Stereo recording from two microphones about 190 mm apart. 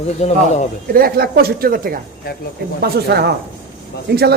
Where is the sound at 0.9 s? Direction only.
50° right (ahead or behind).